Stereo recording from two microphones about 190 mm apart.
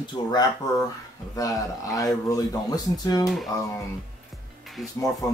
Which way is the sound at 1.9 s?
20° left (ahead or behind).